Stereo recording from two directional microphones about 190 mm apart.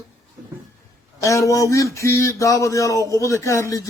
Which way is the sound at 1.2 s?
15° left (ahead or behind).